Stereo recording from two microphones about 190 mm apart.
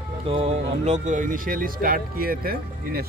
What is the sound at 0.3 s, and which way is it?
Speech, 30° right (ahead or behind).